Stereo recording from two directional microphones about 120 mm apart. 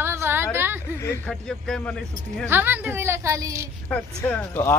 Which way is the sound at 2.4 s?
15° right (ahead or behind).